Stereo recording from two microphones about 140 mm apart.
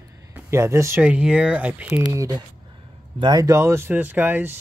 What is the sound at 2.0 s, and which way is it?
Speech, 25° right (ahead or behind).